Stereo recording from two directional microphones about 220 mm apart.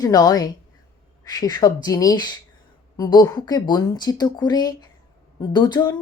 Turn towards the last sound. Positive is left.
turn(degrees=20)  # may be behind; listen again after turning